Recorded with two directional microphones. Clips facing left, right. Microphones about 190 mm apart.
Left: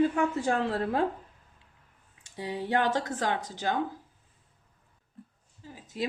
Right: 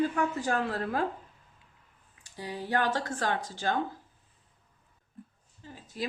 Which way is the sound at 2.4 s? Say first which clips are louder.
Left 2 dB; 25° left (ahead or behind).